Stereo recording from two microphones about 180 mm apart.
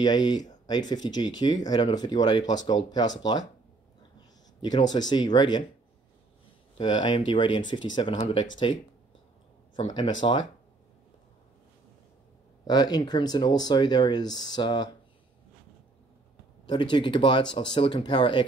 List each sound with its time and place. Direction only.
0.0 s speech: 20° left (ahead or behind)
4.6 s speech: 25° left (ahead or behind)
6.8 s speech: 25° left (ahead or behind)
10.2 s speech: 30° left (ahead or behind)
12.6 s speech: 20° left (ahead or behind)
16.6 s speech: 25° left (ahead or behind)